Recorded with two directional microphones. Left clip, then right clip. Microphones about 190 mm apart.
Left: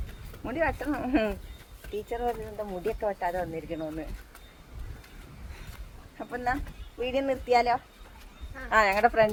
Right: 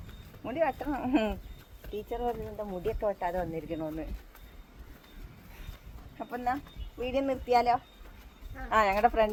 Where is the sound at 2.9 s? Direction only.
20° right (ahead or behind).